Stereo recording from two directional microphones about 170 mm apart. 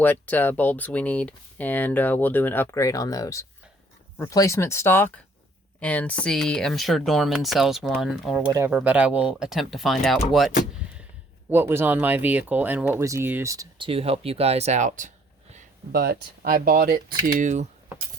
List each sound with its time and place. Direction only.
0.0 s speech: 10° left (ahead or behind)
8.4 s speech: 15° right (ahead or behind); by 10.5 s centre (ahead or behind)
11.5 s speech: 15° right (ahead or behind)
13.8 s speech: 35° right (ahead or behind)
15.9 s speech: 60° right (ahead or behind); by 17.7 s 45° right (ahead or behind)